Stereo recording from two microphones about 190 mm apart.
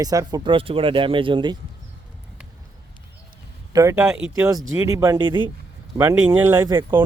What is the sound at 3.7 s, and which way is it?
Speech, 15° right (ahead or behind).